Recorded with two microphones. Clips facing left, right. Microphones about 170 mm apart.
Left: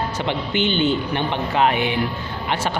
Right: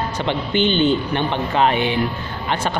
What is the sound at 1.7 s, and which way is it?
Speech, 30° right (ahead or behind).